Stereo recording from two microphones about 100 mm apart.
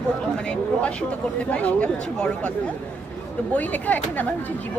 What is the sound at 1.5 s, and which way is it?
Speech, 15° left (ahead or behind).